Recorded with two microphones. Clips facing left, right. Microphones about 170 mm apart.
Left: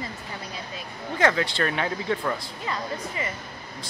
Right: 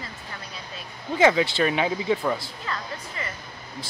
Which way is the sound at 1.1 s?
15° right (ahead or behind).